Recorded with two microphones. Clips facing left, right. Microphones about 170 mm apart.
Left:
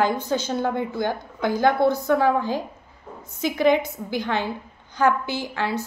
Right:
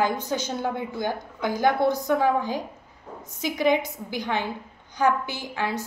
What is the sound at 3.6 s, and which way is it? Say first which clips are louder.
A woman's voice: left 3 dB; 15° right (ahead or behind).